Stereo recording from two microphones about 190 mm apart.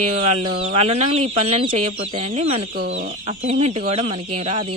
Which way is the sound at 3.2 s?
35° right (ahead or behind).